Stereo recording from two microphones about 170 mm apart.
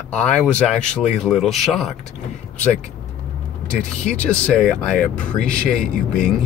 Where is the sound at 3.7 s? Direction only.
5° left (ahead or behind).